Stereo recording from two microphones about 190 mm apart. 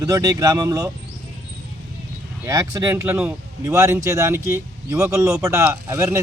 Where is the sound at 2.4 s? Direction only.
20° right (ahead or behind).